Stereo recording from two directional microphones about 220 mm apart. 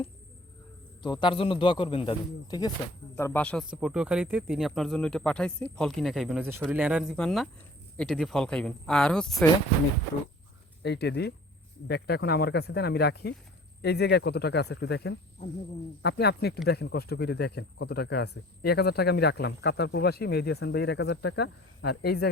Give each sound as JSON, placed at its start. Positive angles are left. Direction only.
{"t": 1.0, "sound": "speech", "side_deg": 20}
{"t": 10.8, "sound": "speech", "side_deg": 50}